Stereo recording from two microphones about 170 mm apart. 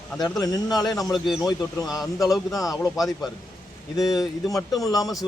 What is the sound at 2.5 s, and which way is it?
Speech, 20° left (ahead or behind).